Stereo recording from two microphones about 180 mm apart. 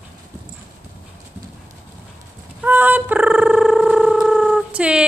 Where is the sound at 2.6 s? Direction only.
10° right (ahead or behind).